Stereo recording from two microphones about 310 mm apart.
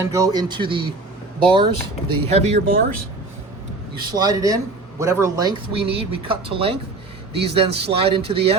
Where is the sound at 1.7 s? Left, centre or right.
Right.